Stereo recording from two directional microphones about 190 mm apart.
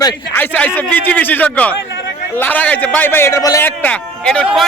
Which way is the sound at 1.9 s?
65° left (ahead or behind).